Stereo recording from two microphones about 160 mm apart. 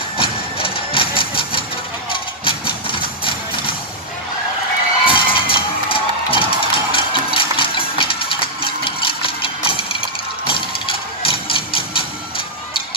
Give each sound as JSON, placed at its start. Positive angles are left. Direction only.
{"t": 0.2, "sound": "engine", "side_deg": 35}
{"t": 5.0, "sound": "music", "side_deg": 35}